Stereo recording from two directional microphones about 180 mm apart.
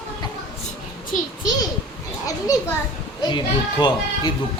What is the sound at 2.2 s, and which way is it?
Speech, 20° left (ahead or behind).